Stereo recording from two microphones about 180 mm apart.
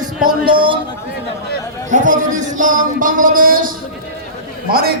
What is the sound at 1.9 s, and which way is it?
A man's voice, 45° right (ahead or behind).